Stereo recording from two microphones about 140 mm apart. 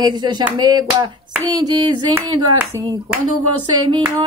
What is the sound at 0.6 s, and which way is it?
Female singing, 30° right (ahead or behind).